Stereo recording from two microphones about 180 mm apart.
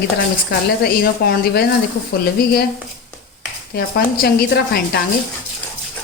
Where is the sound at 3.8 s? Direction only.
60° left (ahead or behind).